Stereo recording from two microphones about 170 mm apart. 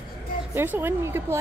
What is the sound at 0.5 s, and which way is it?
Speech, 10° right (ahead or behind).